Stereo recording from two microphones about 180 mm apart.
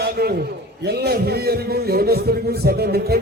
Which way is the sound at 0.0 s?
60° right (ahead or behind).